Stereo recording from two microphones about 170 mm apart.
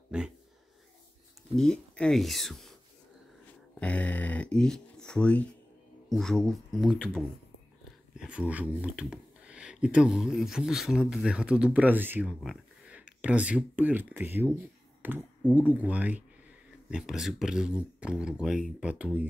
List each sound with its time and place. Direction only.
0.1 s speech: 5° right (ahead or behind)
1.6 s speech: 5° left (ahead or behind)
3.8 s speech: 10° left (ahead or behind)
8.2 s speech: 5° right (ahead or behind)